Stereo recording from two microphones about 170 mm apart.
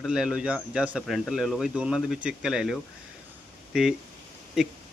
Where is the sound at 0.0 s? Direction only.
5° right (ahead or behind).